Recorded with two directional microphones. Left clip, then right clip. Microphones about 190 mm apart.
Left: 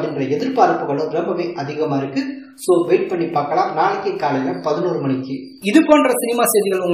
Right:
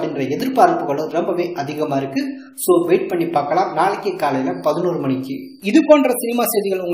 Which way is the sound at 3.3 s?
45° right (ahead or behind).